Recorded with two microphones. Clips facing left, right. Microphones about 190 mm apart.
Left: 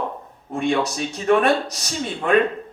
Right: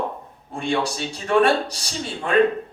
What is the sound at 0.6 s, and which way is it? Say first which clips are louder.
Speech: left 2 dB; 30° right (ahead or behind).